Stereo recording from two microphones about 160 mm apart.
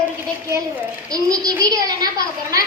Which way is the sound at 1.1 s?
20° right (ahead or behind).